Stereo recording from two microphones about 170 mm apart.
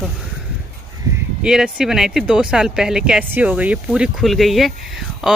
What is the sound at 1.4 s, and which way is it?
A woman's voice, 5° right (ahead or behind).